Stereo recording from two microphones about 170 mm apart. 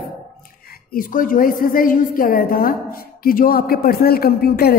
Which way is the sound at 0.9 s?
55° left (ahead or behind).